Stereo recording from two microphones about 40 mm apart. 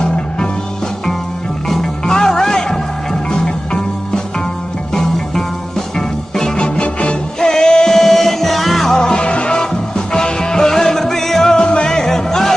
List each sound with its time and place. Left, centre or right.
0.0 s music: left
1.7 s music: centre
8.8 s music: centre
9.1 s music: left; by 11.5 s centre
11.5 s music: left